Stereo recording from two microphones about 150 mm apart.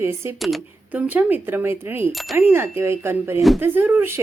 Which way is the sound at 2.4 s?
15° right (ahead or behind).